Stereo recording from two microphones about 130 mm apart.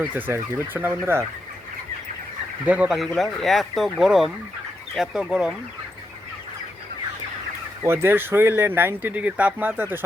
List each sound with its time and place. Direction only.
0.0 s speech: 15° right (ahead or behind)
2.6 s speech: 10° right (ahead or behind)
3.0 s speech: centre (ahead or behind)
7.9 s speech: 15° right (ahead or behind)